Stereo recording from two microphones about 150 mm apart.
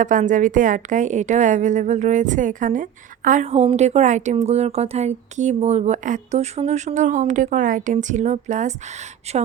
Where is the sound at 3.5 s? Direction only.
45° right (ahead or behind).